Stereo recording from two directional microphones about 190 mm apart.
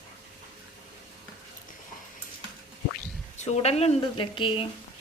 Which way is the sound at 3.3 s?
40° left (ahead or behind).